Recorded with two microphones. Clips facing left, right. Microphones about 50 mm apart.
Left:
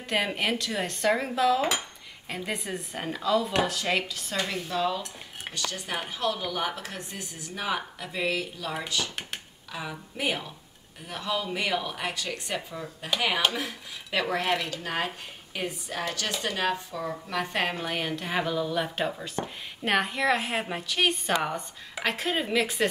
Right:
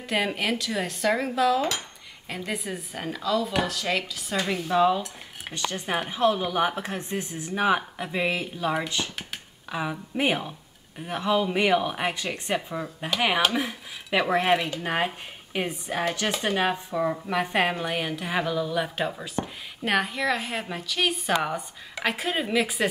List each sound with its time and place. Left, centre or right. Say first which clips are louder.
0.0 s speech: right 1 dB; centre
4.6 s speech: right 7 dB; centre